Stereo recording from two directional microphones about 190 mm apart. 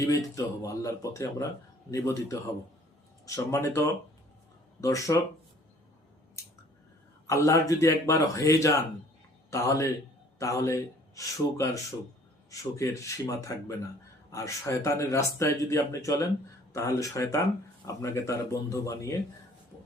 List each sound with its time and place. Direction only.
0.0 s speech: 20° left (ahead or behind)
7.3 s speech: 15° left (ahead or behind)